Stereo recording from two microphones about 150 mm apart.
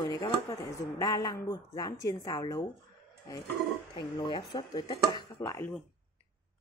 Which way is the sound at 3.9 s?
30° left (ahead or behind).